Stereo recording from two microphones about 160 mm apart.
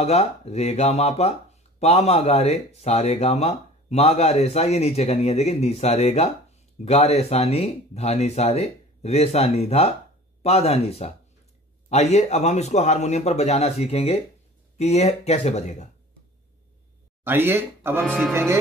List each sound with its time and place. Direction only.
0.0 s speech: 40° left (ahead or behind)
17.2 s speech: 15° right (ahead or behind)